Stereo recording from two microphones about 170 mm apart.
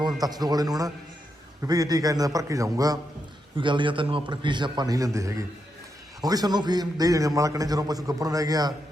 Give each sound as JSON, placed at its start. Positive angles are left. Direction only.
{"t": 0.2, "sound": "a man's voice", "side_deg": -25}